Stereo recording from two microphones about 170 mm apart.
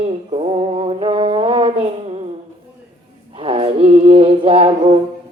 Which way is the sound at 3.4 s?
35° right (ahead or behind).